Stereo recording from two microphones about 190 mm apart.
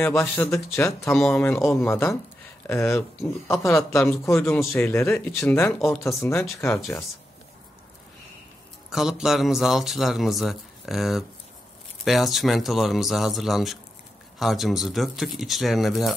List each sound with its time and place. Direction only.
0.0 s speech: 10° left (ahead or behind)
1.1 s speech: centre (ahead or behind)
6.7 s a man's voice: centre (ahead or behind)
8.9 s a man's voice: centre (ahead or behind)